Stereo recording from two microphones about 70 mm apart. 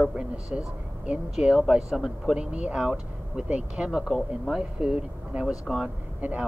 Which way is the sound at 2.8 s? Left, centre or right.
Centre.